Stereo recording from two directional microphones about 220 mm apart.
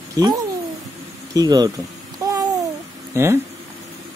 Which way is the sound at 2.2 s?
15° right (ahead or behind).